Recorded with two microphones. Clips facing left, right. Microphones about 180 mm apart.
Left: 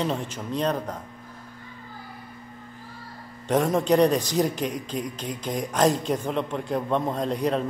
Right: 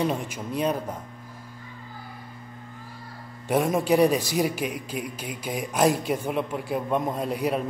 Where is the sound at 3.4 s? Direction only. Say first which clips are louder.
Left 1 dB; 10° right (ahead or behind).